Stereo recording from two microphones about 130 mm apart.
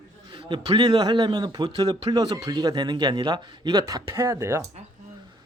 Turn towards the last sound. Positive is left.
turn(degrees=-20)  # may be behind; listen again after turning